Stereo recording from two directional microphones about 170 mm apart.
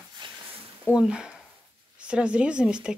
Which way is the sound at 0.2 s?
30° right (ahead or behind).